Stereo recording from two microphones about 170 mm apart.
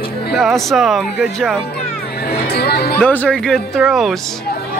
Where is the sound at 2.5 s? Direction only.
70° left (ahead or behind).